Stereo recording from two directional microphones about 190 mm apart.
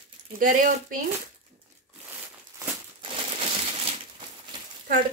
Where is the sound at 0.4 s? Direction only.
45° right (ahead or behind).